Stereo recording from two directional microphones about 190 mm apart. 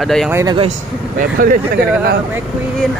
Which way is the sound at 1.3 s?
45° right (ahead or behind).